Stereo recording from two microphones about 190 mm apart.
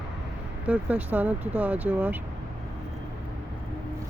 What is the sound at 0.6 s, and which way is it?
Speech, 5° right (ahead or behind).